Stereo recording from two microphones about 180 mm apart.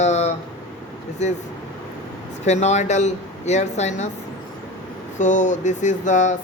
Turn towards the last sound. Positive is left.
turn(degrees=45)  # may be behind; listen again after turning